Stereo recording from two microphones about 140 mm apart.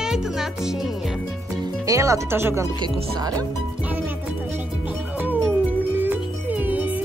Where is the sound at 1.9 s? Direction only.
20° right (ahead or behind).